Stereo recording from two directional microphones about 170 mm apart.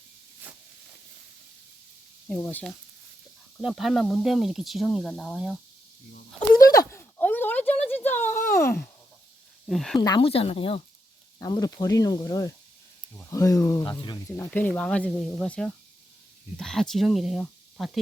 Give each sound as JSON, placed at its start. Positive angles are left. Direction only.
{"t": 2.2, "sound": "speech", "side_deg": 15}
{"t": 3.6, "sound": "speech", "side_deg": 0}
{"t": 6.5, "sound": "a sound", "side_deg": 20}
{"t": 9.6, "sound": "speech", "side_deg": 0}
{"t": 10.0, "sound": "speech", "side_deg": 30}
{"t": 14.3, "sound": "speech", "side_deg": 10}